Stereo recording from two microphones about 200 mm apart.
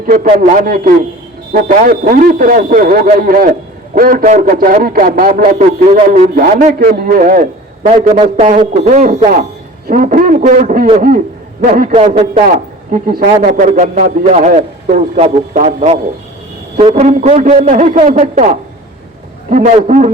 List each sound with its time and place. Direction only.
0.1 s a man's voice: 45° right (ahead or behind)
6.3 s a man's voice: 45° right (ahead or behind)
11.9 s a man's voice: 35° right (ahead or behind)